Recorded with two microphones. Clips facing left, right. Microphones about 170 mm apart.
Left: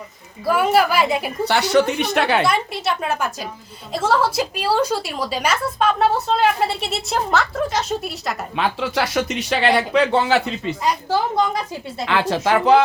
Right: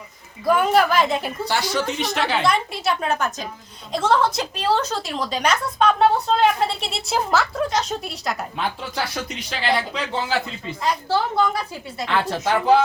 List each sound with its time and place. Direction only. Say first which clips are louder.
0.4 s a woman's voice: left 1 dB; 5° left (ahead or behind)
1.5 s a woman's voice: left 8 dB; 65° left (ahead or behind)
2.4 s a woman's voice: left 1 dB; 5° left (ahead or behind)
8.5 s speech: left 5 dB; 90° left; by 10.8 s 75° left (ahead or behind)
11.1 s a woman's voice: even; 15° left (ahead or behind)
12.0 s speech: left 3 dB; 90° left